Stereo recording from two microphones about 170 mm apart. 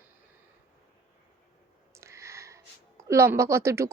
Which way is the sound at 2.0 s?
15° right (ahead or behind).